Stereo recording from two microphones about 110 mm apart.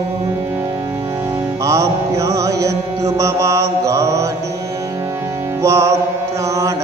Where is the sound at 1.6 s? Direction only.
30° right (ahead or behind).